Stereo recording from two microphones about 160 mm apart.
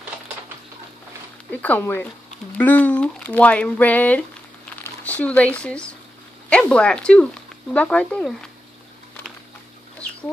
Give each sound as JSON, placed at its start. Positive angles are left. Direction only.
{"t": 1.5, "sound": "speech", "side_deg": 10}